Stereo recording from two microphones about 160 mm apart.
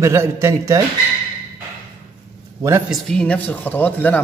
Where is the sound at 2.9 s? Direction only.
5° left (ahead or behind).